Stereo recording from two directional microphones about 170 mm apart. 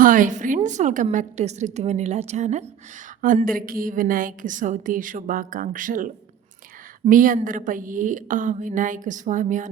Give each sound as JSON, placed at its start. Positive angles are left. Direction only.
{"t": 0.0, "sound": "a woman's voice", "side_deg": -50}